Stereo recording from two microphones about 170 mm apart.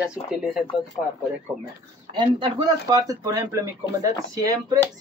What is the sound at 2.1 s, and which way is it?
Speech, 25° right (ahead or behind).